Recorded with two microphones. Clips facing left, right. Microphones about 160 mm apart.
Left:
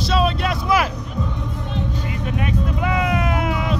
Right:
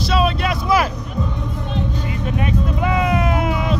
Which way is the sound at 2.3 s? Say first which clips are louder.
Right 2 dB; 30° right (ahead or behind).